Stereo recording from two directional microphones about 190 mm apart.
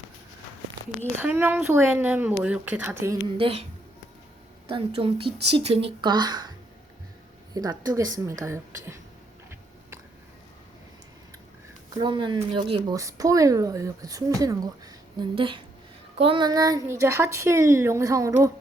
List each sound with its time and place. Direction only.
1.2 s a woman's voice: 10° right (ahead or behind)
3.3 s speech: 30° right (ahead or behind)
4.7 s speech: 30° right (ahead or behind)
7.5 s a woman's voice: 20° right (ahead or behind)
11.9 s a woman's voice: 25° right (ahead or behind)